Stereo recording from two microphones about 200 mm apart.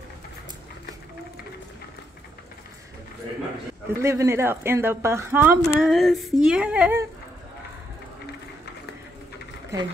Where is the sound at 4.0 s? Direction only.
15° right (ahead or behind).